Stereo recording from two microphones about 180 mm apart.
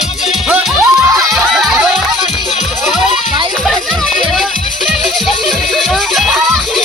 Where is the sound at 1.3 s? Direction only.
Centre (ahead or behind).